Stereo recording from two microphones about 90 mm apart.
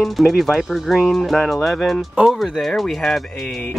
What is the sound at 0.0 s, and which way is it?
Speech, centre (ahead or behind).